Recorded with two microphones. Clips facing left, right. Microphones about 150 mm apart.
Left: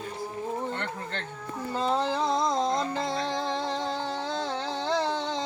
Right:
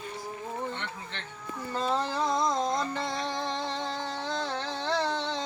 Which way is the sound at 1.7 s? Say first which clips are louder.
Left 3 dB; 20° left (ahead or behind).